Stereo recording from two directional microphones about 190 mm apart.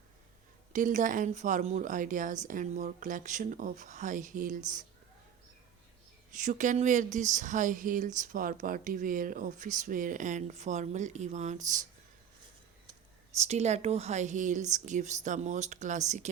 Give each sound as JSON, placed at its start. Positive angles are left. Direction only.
{"t": 0.7, "sound": "speech", "side_deg": -40}
{"t": 6.3, "sound": "speech", "side_deg": -40}
{"t": 13.4, "sound": "speech", "side_deg": -35}